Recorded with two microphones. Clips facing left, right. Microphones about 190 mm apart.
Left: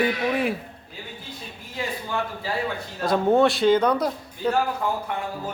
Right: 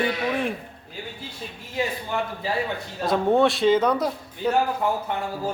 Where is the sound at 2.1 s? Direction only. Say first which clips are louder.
Even; 20° right (ahead or behind).